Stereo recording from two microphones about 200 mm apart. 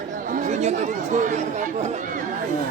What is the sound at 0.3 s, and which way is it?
Speech, 40° right (ahead or behind).